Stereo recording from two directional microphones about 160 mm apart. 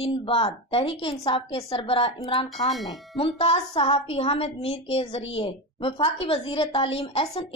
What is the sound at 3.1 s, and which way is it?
A woman's voice, 40° left (ahead or behind).